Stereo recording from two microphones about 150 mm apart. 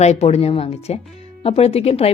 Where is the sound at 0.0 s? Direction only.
45° left (ahead or behind).